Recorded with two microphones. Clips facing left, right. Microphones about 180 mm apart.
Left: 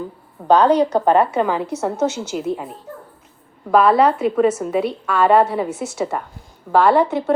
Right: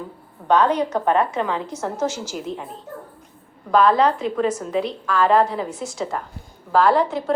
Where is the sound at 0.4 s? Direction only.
35° left (ahead or behind).